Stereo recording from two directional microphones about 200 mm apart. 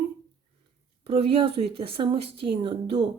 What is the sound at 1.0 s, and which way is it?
A woman's voice, 30° right (ahead or behind).